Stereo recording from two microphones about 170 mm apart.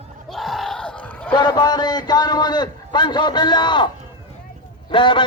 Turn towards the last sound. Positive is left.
turn(degrees=30)  # may be behind; listen again after turning